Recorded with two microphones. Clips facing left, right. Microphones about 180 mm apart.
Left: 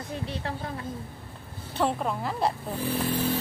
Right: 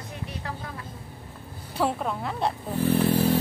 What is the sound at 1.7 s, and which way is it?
Speech, 5° right (ahead or behind).